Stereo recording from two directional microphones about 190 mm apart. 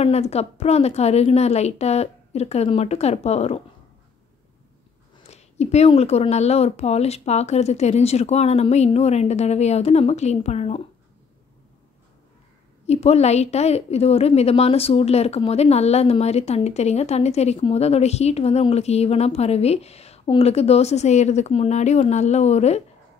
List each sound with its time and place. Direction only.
0.0 s a woman's voice: 35° left (ahead or behind)
5.2 s a woman's voice: 35° left (ahead or behind)
12.8 s a woman's voice: 35° left (ahead or behind)